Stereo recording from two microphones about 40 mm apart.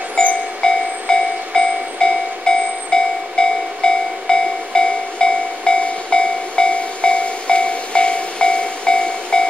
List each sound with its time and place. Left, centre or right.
0.1 s train: left